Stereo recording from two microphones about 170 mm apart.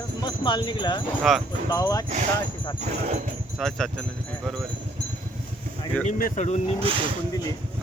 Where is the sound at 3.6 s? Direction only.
5° left (ahead or behind).